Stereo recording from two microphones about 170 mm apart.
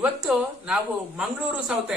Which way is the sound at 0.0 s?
5° right (ahead or behind).